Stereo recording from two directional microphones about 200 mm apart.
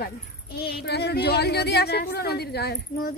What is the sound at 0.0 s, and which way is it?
Speech, 50° left (ahead or behind).